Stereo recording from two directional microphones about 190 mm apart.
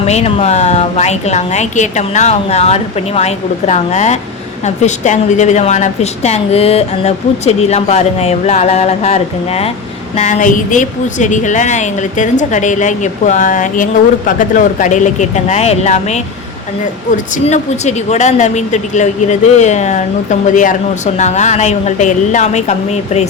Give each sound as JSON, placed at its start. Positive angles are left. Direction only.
{"t": 0.0, "sound": "a woman's voice", "side_deg": 35}
{"t": 17.3, "sound": "a woman's voice", "side_deg": 35}